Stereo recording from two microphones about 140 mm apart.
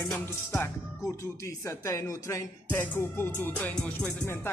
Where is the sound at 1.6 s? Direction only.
20° left (ahead or behind).